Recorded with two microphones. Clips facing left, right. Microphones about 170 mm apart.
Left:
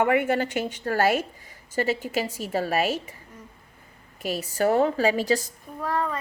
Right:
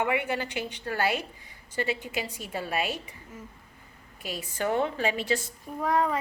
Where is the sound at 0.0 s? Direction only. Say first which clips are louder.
Left 6 dB; 45° left (ahead or behind).